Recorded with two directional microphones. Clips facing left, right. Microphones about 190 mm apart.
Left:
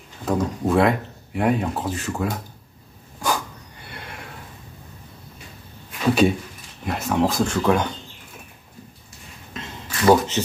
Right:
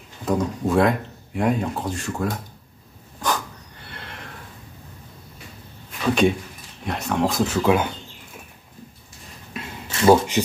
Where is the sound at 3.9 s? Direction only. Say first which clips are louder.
Left 2 dB; 10° left (ahead or behind).